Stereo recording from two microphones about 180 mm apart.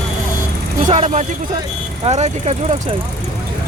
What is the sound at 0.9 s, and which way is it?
Speech, 40° right (ahead or behind).